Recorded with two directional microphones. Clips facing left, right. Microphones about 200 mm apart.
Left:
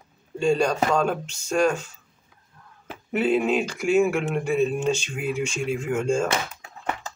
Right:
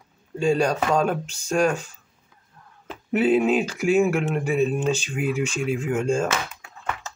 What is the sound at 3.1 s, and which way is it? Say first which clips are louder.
Speech: right 3 dB; 5° right (ahead or behind).